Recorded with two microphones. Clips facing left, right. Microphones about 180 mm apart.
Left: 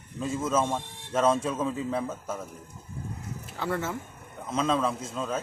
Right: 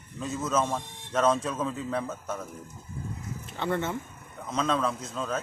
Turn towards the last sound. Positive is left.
turn(degrees=5)  # may be behind; listen again after turning